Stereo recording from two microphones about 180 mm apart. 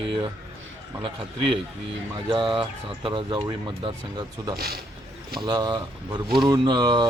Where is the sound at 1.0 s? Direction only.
30° right (ahead or behind).